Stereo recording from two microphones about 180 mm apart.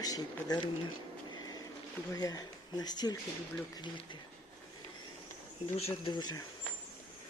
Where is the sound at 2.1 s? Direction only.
20° left (ahead or behind).